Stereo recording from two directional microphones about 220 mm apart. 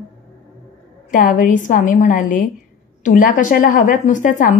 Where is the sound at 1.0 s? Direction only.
35° left (ahead or behind).